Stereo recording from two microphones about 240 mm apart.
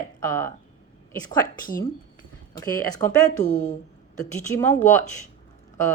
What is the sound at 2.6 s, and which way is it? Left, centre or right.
Speech, centre.